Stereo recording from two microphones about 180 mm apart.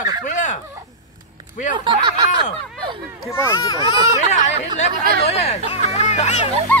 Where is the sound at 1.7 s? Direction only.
25° right (ahead or behind).